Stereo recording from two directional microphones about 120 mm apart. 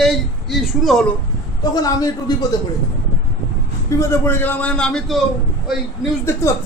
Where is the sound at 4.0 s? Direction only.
20° left (ahead or behind); by 5.2 s centre (ahead or behind).